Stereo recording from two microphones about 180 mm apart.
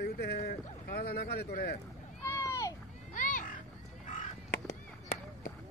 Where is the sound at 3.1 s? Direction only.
45° left (ahead or behind).